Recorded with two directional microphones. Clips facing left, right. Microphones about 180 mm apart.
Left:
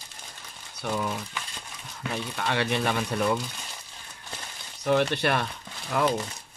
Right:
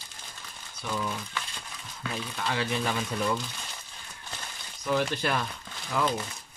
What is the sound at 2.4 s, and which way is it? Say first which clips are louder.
Speech: left 3 dB; 65° left (ahead or behind).